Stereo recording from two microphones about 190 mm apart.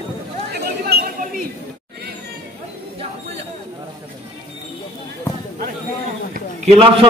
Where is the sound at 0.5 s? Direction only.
55° right (ahead or behind).